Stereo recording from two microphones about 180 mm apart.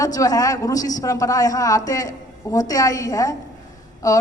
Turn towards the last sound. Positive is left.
turn(degrees=20)  # may be behind; listen again after turning